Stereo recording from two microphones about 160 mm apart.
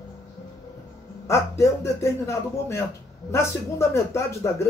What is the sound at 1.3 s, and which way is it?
Speech, 15° left (ahead or behind).